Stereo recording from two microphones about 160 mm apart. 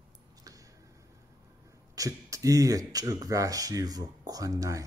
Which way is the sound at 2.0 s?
20° right (ahead or behind).